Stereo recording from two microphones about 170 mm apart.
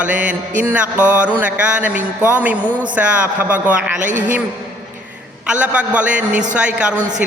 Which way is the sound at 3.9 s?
45° right (ahead or behind).